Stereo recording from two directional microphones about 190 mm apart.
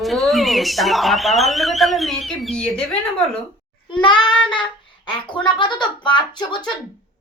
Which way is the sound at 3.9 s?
25° left (ahead or behind).